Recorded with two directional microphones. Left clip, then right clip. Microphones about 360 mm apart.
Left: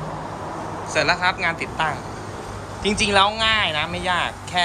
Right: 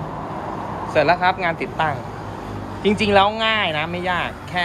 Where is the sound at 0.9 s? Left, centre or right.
Centre.